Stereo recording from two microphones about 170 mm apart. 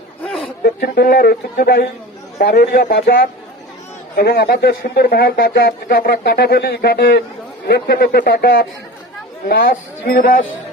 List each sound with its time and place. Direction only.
0.6 s speech: 65° left (ahead or behind)